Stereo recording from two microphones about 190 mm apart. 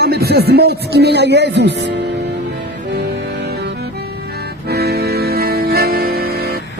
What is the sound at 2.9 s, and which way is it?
Music, 55° right (ahead or behind).